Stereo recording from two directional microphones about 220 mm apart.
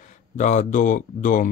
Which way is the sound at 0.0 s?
35° left (ahead or behind).